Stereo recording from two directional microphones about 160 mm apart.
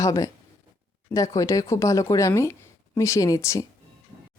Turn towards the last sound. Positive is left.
turn(degrees=20)  # may be behind; listen again after turning